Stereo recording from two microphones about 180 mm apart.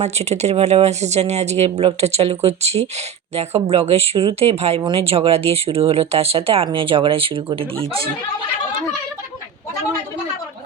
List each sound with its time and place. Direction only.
0.0 s speech: 35° right (ahead or behind)